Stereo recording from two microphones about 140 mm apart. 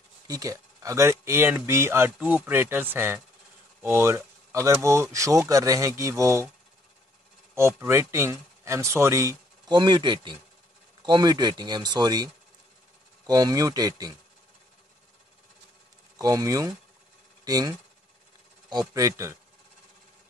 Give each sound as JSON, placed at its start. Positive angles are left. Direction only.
{"t": 0.3, "sound": "speech", "side_deg": -25}
{"t": 7.5, "sound": "speech", "side_deg": -20}
{"t": 9.7, "sound": "speech", "side_deg": -35}
{"t": 13.3, "sound": "speech", "side_deg": -25}
{"t": 16.2, "sound": "speech", "side_deg": -25}